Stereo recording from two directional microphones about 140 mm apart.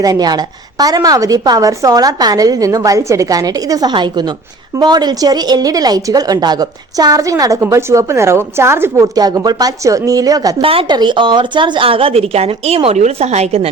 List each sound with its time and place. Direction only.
0.0 s a woman's voice: 25° right (ahead or behind)
10.6 s a woman's voice: 40° right (ahead or behind)